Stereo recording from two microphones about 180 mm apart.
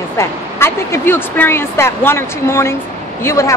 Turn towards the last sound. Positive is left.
turn(degrees=15)  # may be behind; listen again after turning